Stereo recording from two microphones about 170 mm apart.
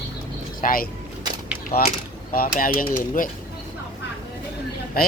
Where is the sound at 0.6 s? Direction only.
55° left (ahead or behind).